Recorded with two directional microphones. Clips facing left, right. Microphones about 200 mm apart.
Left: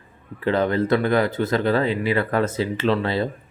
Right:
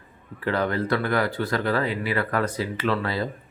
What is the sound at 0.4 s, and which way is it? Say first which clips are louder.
Speech: left 4 dB; 25° left (ahead or behind).